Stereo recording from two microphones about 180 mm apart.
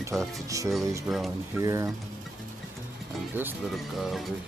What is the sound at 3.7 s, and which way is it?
Speech, centre (ahead or behind).